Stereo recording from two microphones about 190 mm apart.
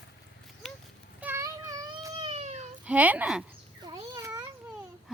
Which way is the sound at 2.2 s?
35° right (ahead or behind).